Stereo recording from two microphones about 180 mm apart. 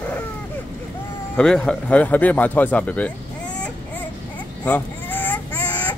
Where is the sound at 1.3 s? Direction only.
5° left (ahead or behind).